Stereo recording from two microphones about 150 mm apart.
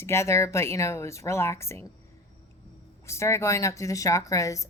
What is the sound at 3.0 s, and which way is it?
Speech, 20° left (ahead or behind).